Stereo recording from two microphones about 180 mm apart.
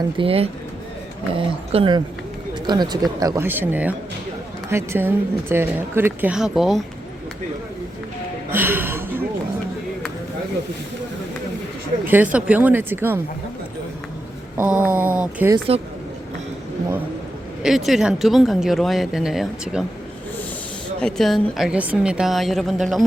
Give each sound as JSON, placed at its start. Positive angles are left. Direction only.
{"t": 0.2, "sound": "speech", "side_deg": -30}
{"t": 1.7, "sound": "speech", "side_deg": -30}
{"t": 8.4, "sound": "speech", "side_deg": -10}
{"t": 12.0, "sound": "speech", "side_deg": -10}
{"t": 14.5, "sound": "speech", "side_deg": -10}
{"t": 15.5, "sound": "speech", "side_deg": -30}
{"t": 17.6, "sound": "speech", "side_deg": 0}
{"t": 21.0, "sound": "speech", "side_deg": 0}